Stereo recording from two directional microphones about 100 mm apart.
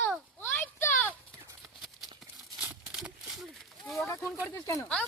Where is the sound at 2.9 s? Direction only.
5° right (ahead or behind).